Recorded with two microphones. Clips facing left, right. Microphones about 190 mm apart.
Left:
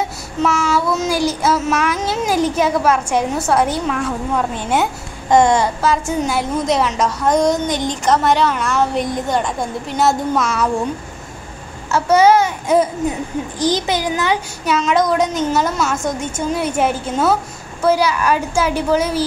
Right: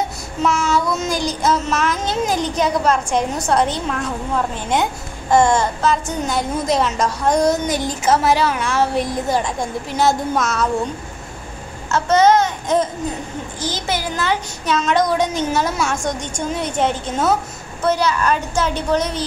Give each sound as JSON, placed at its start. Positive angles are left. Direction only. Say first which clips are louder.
{"t": 0.4, "sound": "child singing", "louder": "left 1 dB", "side_deg": 10}
{"t": 5.3, "sound": "a woman's voice", "louder": "left 2 dB", "side_deg": 15}
{"t": 11.9, "sound": "child singing", "louder": "left 2 dB", "side_deg": 10}
{"t": 14.8, "sound": "a woman's voice", "louder": "left 2 dB", "side_deg": 0}
{"t": 17.8, "sound": "child singing", "louder": "left 2 dB", "side_deg": 10}